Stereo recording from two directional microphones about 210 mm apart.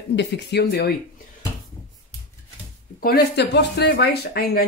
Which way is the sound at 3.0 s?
50° left (ahead or behind).